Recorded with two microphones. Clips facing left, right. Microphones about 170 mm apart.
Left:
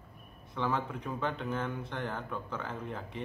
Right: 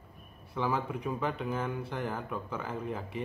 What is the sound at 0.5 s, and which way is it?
Speech, 10° right (ahead or behind).